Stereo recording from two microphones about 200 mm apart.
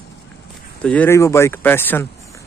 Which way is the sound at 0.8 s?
5° left (ahead or behind).